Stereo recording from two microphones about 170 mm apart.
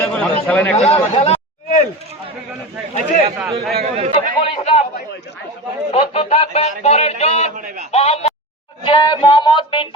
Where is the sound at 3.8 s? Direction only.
40° right (ahead or behind).